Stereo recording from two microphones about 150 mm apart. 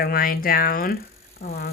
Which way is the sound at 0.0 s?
75° left (ahead or behind).